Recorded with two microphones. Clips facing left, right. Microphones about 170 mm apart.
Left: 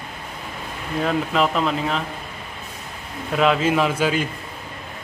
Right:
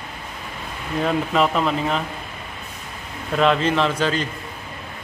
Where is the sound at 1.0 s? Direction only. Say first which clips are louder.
Right 1 dB; centre (ahead or behind).